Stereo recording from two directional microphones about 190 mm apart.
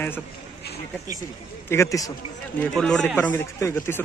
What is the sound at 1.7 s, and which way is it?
Speech, 15° left (ahead or behind).